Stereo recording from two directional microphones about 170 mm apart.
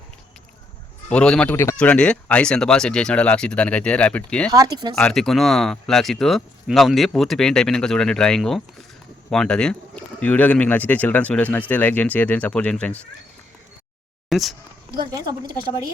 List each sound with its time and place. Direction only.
1.1 s speech: 5° left (ahead or behind)
4.5 s a woman's voice: 20° right (ahead or behind)
4.9 s speech: 5° left (ahead or behind)
14.3 s a sound: centre (ahead or behind)
15.1 s a woman's voice: 25° right (ahead or behind)